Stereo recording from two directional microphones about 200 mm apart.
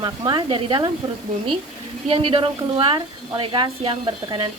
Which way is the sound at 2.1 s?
25° right (ahead or behind).